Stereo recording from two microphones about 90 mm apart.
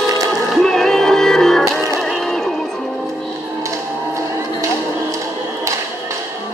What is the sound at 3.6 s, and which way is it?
Music, 35° right (ahead or behind).